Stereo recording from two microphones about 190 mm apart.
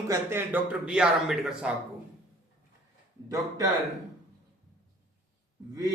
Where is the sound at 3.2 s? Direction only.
20° right (ahead or behind).